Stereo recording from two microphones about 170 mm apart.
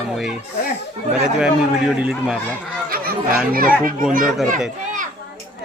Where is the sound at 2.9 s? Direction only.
60° right (ahead or behind).